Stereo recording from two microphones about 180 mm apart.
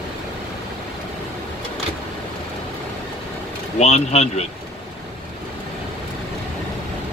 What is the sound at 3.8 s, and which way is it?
Speech, 35° left (ahead or behind).